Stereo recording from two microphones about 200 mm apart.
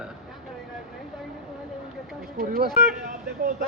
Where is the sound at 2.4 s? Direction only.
45° right (ahead or behind).